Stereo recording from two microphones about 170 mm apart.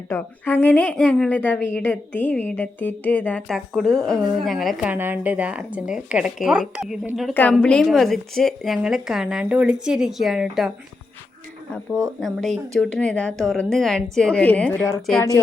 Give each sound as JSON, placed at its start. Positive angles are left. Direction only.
{"t": 0.1, "sound": "a woman's voice", "side_deg": 10}
{"t": 7.3, "sound": "a woman's voice", "side_deg": 5}
{"t": 12.2, "sound": "a woman's voice", "side_deg": 0}